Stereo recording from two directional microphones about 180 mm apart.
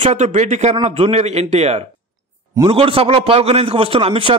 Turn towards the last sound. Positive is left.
turn(degrees=-30)  # may be behind; listen again after turning